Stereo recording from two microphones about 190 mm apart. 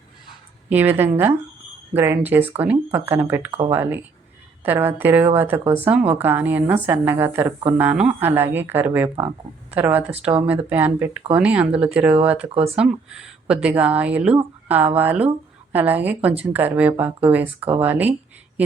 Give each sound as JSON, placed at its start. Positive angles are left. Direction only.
{"t": 0.7, "sound": "speech", "side_deg": -10}
{"t": 12.5, "sound": "speech", "side_deg": -30}
{"t": 12.7, "sound": "speech", "side_deg": -5}